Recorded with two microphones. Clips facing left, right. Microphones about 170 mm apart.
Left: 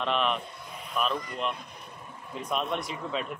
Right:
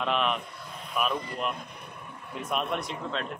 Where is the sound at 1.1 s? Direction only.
30° right (ahead or behind).